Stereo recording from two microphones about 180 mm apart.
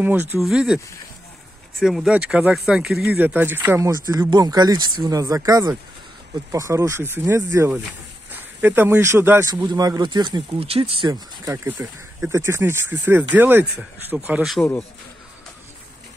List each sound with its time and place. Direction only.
0.0 s speech: 10° right (ahead or behind)
1.8 s speech: centre (ahead or behind)